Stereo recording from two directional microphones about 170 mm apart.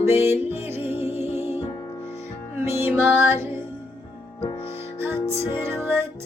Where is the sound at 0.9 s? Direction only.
35° left (ahead or behind).